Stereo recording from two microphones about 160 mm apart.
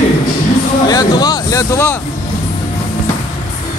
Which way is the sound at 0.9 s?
25° left (ahead or behind).